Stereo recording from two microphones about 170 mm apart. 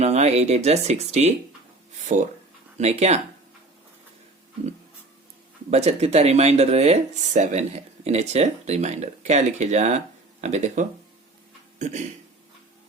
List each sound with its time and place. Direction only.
0.0 s speech: 40° right (ahead or behind)
5.7 s speech: 40° right (ahead or behind)